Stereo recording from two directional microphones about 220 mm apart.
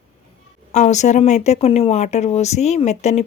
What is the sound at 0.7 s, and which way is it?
Speech, 30° left (ahead or behind).